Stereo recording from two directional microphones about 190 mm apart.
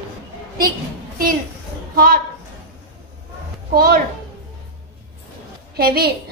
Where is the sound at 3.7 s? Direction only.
50° right (ahead or behind).